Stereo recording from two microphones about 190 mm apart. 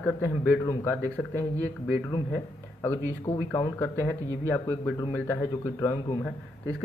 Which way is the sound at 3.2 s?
15° left (ahead or behind).